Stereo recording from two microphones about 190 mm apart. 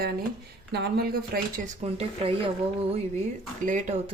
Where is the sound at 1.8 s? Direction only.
30° right (ahead or behind).